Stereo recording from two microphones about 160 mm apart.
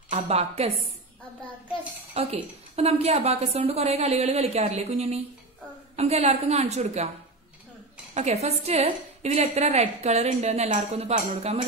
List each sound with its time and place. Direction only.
0.1 s a woman's voice: 40° right (ahead or behind)
2.1 s a woman's voice: 40° right (ahead or behind)
8.1 s a woman's voice: 45° right (ahead or behind)